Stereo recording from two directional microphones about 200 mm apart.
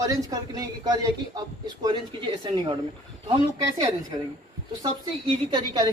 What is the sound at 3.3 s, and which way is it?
Speech, 25° right (ahead or behind).